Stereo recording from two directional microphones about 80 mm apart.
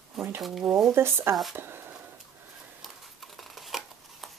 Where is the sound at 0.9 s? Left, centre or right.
Right.